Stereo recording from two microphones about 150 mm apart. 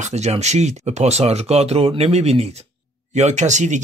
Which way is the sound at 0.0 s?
50° right (ahead or behind).